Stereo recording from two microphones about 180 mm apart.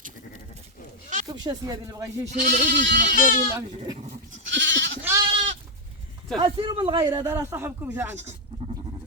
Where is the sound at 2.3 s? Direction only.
45° right (ahead or behind).